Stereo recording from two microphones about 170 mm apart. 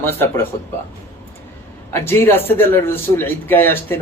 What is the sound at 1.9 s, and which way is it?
Speech, 15° left (ahead or behind).